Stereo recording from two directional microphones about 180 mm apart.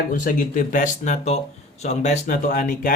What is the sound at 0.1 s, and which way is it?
Speech, 50° left (ahead or behind).